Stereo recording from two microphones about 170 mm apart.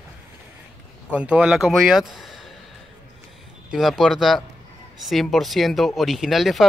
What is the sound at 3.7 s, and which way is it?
Speech, centre (ahead or behind).